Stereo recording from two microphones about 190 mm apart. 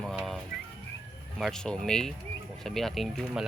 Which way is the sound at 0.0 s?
Centre (ahead or behind).